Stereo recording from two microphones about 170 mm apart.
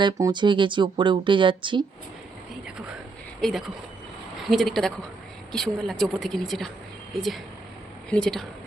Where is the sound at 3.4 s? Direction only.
Centre (ahead or behind).